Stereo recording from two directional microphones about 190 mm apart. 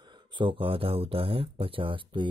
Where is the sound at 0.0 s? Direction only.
25° right (ahead or behind).